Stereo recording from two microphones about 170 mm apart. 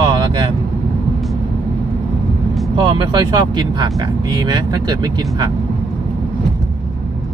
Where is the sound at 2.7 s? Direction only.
25° right (ahead or behind).